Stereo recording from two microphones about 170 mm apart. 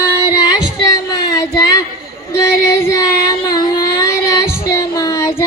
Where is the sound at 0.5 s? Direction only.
25° left (ahead or behind).